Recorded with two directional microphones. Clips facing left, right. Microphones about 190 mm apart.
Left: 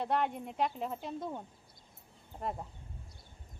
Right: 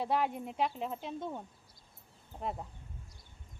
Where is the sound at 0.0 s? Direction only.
Centre (ahead or behind).